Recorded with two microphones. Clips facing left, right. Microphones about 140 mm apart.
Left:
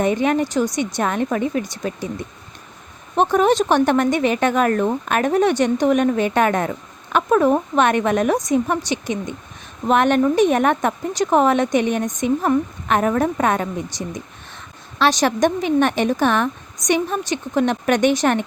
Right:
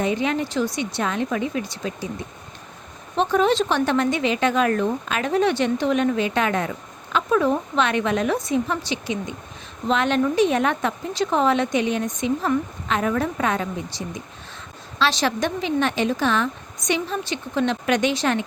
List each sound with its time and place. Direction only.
0.0 s a woman's voice: 50° left (ahead or behind)
3.2 s a woman's voice: 50° left (ahead or behind)
14.9 s a woman's voice: 50° left (ahead or behind)